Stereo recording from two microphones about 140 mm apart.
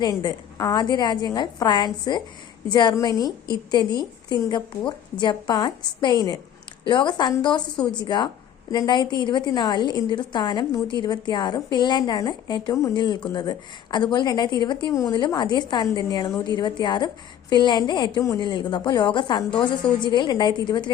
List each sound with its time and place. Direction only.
0.0 s a woman's voice: 30° left (ahead or behind)